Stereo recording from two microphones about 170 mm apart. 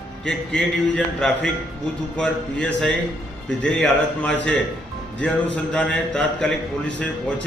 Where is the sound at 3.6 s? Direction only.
5° left (ahead or behind).